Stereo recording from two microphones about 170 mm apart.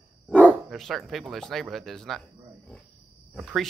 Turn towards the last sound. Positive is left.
turn(degrees=0)  # may be behind; listen again after turning